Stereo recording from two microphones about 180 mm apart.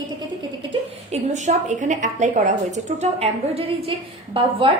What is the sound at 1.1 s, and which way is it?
A woman's voice, 40° right (ahead or behind).